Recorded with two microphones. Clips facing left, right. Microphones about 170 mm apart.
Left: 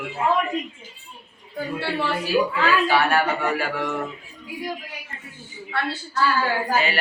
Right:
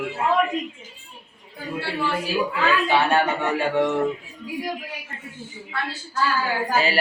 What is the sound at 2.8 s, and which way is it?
Speech, 20° right (ahead or behind).